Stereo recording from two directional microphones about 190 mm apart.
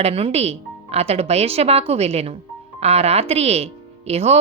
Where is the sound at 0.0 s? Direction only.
30° right (ahead or behind).